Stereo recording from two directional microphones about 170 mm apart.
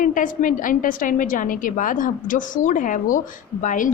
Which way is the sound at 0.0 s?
50° left (ahead or behind).